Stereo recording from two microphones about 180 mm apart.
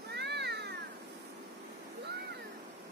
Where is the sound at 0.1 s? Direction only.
70° right (ahead or behind).